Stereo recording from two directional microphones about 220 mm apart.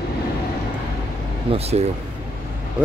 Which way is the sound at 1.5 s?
30° right (ahead or behind).